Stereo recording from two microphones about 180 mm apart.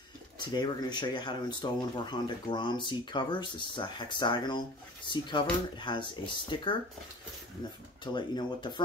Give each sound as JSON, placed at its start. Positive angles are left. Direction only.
{"t": 0.4, "sound": "speech", "side_deg": 25}
{"t": 8.0, "sound": "speech", "side_deg": 25}